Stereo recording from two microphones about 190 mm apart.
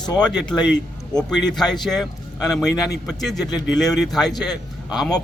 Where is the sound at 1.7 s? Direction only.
Centre (ahead or behind).